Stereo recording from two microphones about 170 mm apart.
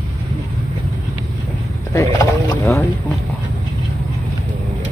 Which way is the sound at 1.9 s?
20° left (ahead or behind).